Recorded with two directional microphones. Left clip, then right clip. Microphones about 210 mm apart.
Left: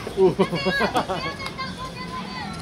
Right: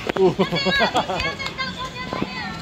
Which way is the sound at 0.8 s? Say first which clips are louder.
Right 2 dB; 35° right (ahead or behind).